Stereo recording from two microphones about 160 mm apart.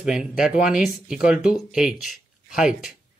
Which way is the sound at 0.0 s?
5° right (ahead or behind).